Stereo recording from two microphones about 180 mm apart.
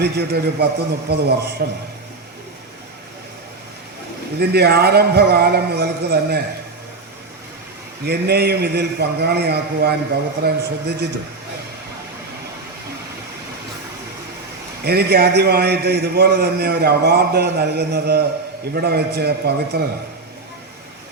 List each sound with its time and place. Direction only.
0.0 s a man's voice: 65° right (ahead or behind)
4.4 s a man's voice: 65° right (ahead or behind)
8.0 s a man's voice: 65° right (ahead or behind)
14.8 s a man's voice: 60° right (ahead or behind)